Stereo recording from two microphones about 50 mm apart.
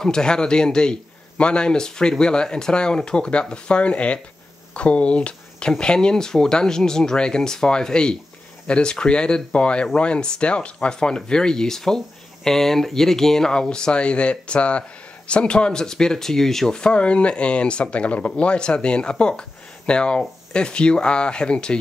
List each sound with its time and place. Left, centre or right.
0.0 s speech: centre
16.7 s speech: centre